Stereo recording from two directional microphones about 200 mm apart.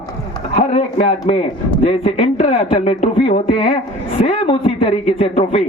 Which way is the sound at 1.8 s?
30° left (ahead or behind).